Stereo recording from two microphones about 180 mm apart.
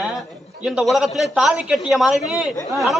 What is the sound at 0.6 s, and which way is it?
A man's voice, centre (ahead or behind).